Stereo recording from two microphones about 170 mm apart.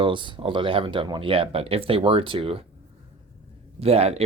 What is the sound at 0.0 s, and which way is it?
Speech, 30° right (ahead or behind).